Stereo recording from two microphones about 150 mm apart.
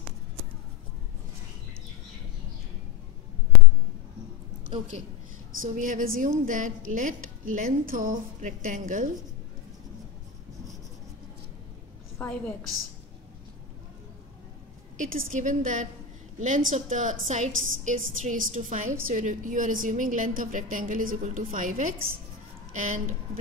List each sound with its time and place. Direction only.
3.5 s a sound: centre (ahead or behind)
5.6 s a woman's voice: 60° right (ahead or behind)
12.2 s a woman's voice: 10° left (ahead or behind)
15.0 s a woman's voice: 60° right (ahead or behind)